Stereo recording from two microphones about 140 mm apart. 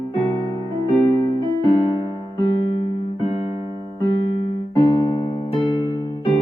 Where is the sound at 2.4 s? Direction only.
35° left (ahead or behind).